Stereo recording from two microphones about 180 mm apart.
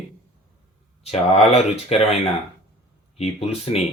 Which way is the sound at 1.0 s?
35° left (ahead or behind).